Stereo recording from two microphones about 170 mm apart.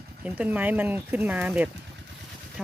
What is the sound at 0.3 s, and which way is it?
Speech, 10° right (ahead or behind).